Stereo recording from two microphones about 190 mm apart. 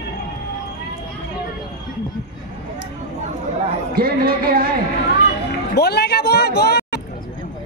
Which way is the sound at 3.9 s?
50° right (ahead or behind).